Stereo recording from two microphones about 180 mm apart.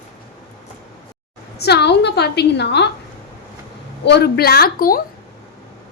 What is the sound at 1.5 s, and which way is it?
A woman's voice, 65° left (ahead or behind).